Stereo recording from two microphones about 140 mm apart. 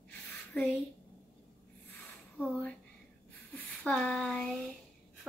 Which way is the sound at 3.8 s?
5° left (ahead or behind).